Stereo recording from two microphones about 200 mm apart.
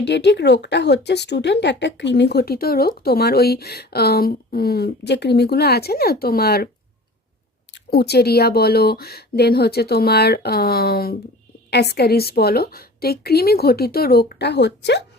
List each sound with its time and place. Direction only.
0.0 s speech: 55° left (ahead or behind)
7.7 s speech: 55° left (ahead or behind)